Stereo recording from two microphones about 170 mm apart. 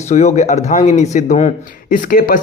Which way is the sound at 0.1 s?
40° left (ahead or behind).